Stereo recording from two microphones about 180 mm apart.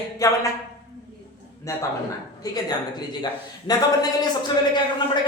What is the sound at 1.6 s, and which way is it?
A woman's voice, 15° left (ahead or behind).